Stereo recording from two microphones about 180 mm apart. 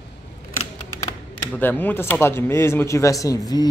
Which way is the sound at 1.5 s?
10° left (ahead or behind).